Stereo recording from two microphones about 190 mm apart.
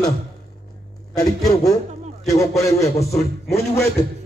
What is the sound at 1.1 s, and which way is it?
A man's voice, 20° left (ahead or behind).